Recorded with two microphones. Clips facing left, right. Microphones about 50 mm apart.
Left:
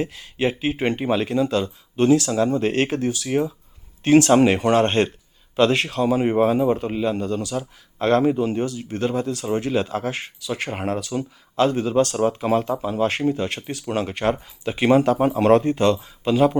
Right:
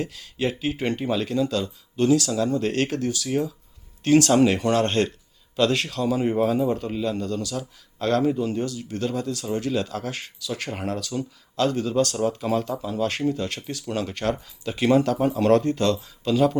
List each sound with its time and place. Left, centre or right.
0.0 s a man's voice: left